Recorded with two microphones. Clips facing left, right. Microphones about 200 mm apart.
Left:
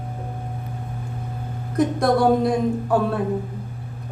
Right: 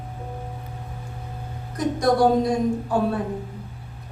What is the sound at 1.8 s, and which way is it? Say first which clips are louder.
Speech: left 1 dB; 55° left (ahead or behind).